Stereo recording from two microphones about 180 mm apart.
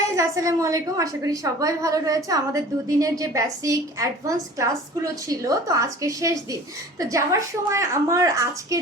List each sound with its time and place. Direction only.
0.2 s a woman's voice: 20° right (ahead or behind)